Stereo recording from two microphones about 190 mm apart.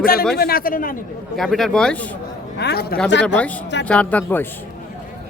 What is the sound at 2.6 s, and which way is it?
Speech, 60° left (ahead or behind).